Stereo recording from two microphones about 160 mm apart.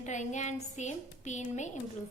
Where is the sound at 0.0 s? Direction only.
50° left (ahead or behind).